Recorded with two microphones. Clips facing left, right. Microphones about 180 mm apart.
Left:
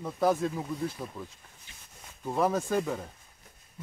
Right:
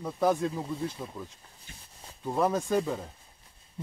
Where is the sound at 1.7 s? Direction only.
45° right (ahead or behind).